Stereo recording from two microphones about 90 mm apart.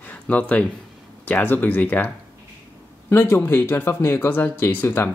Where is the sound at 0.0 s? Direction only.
20° left (ahead or behind).